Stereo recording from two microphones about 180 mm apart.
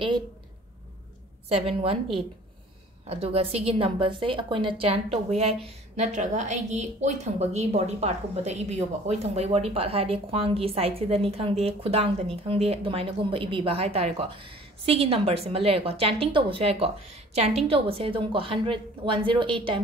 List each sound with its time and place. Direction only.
1.5 s a woman's voice: 35° right (ahead or behind)
3.1 s a woman's voice: 35° right (ahead or behind)